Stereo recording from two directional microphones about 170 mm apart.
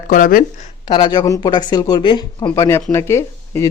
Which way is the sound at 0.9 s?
25° left (ahead or behind).